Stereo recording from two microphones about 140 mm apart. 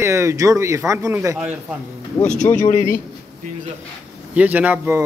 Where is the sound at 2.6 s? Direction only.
65° left (ahead or behind).